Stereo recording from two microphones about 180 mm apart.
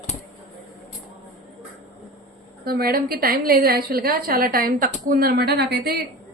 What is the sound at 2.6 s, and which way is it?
A woman's voice, 60° right (ahead or behind).